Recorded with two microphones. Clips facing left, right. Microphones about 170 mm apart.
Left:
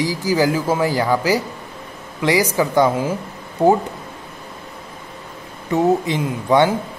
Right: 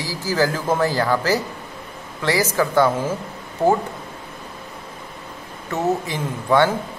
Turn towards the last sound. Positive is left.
turn(degrees=15)  # may be behind; listen again after turning